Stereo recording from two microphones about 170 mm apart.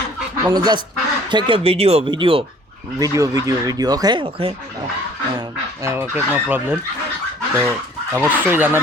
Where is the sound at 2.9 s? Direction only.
20° right (ahead or behind).